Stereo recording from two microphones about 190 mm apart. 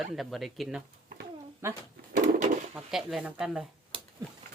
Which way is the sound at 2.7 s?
Centre (ahead or behind).